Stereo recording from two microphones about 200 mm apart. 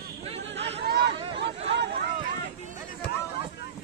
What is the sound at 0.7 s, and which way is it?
Chatter, 55° right (ahead or behind).